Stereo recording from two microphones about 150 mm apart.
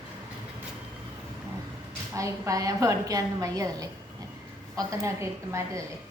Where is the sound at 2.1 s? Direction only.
20° right (ahead or behind).